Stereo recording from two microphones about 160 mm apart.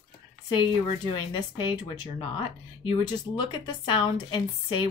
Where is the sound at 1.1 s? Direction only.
30° left (ahead or behind).